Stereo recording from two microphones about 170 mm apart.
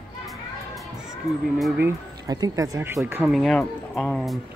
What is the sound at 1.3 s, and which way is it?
Speech, centre (ahead or behind).